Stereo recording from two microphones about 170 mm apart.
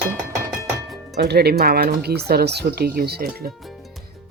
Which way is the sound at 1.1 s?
70° right (ahead or behind).